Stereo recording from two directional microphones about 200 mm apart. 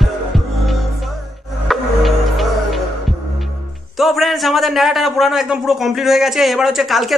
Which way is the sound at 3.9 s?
Centre (ahead or behind).